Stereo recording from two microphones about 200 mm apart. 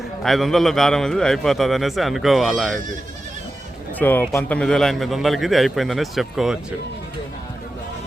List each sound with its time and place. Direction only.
0.2 s a man's voice: centre (ahead or behind)
3.9 s a man's voice: 10° left (ahead or behind)